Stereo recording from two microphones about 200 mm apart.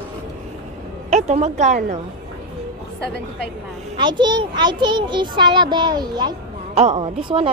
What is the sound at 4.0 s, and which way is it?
A child's voice, 20° right (ahead or behind).